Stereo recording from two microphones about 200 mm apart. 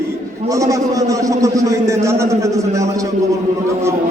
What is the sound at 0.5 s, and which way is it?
A man's voice, 15° right (ahead or behind).